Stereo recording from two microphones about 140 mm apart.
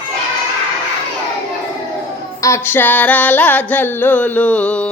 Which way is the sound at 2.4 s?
15° left (ahead or behind).